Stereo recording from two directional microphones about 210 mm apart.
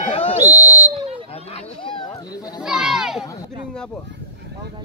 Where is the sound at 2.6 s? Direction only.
5° right (ahead or behind).